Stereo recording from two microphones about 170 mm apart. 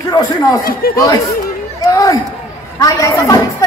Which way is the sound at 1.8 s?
20° left (ahead or behind).